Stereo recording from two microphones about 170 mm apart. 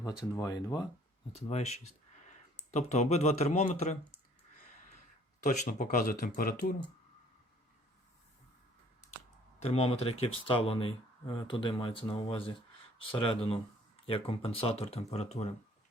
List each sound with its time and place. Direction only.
0.3 s speech: 20° left (ahead or behind)
1.4 s speech: 40° left (ahead or behind)
5.4 s speech: 50° left (ahead or behind)
9.6 s speech: 40° left (ahead or behind)